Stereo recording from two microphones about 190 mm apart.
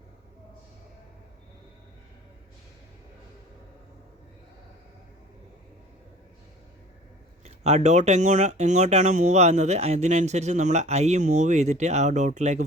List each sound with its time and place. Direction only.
7.4 s speech: 35° right (ahead or behind)